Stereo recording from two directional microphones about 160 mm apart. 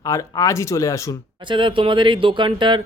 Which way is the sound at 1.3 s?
30° right (ahead or behind).